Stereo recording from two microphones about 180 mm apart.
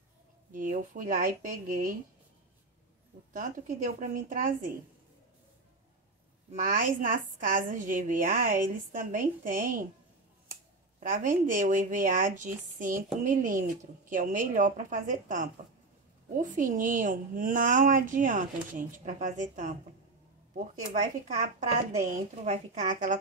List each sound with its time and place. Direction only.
0.5 s a woman's voice: 45° right (ahead or behind)
3.3 s a woman's voice: 45° right (ahead or behind)
6.5 s a woman's voice: 45° right (ahead or behind)
11.0 s a woman's voice: 45° right (ahead or behind)